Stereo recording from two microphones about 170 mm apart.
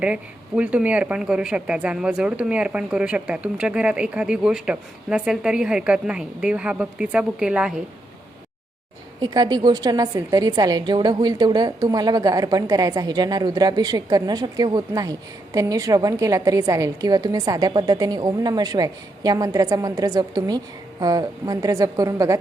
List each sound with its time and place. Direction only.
0.0 s speech: 10° right (ahead or behind)
9.2 s a woman's voice: 25° right (ahead or behind)